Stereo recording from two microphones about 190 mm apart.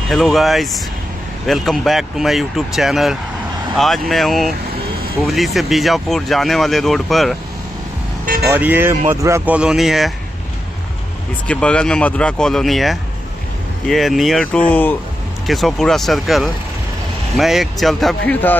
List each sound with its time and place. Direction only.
0.1 s speech: centre (ahead or behind)
8.5 s speech: 10° right (ahead or behind)
11.4 s speech: 5° left (ahead or behind)